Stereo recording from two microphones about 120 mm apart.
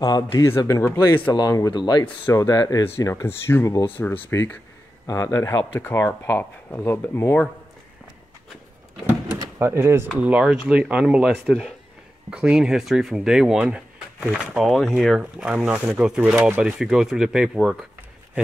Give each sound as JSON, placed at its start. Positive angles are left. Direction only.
{"t": 0.0, "sound": "speech", "side_deg": 35}
{"t": 9.6, "sound": "speech", "side_deg": -20}
{"t": 10.2, "sound": "speech", "side_deg": -10}
{"t": 11.3, "sound": "speech", "side_deg": 0}